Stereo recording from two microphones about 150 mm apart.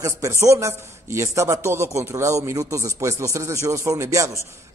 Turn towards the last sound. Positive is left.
turn(degrees=-20)  # may be behind; listen again after turning